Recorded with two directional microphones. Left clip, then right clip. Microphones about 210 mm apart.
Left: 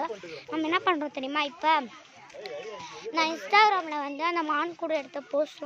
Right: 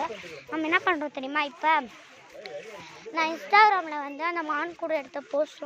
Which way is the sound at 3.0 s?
15° left (ahead or behind).